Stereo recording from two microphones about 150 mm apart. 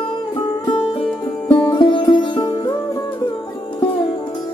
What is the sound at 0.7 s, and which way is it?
Music, 35° left (ahead or behind).